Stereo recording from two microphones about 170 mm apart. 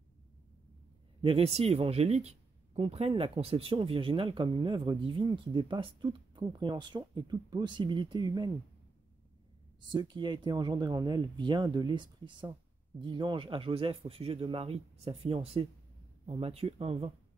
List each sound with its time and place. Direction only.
1.2 s speech: 35° right (ahead or behind)
9.8 s speech: 25° right (ahead or behind)